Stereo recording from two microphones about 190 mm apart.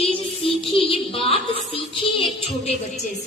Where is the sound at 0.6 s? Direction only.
30° left (ahead or behind).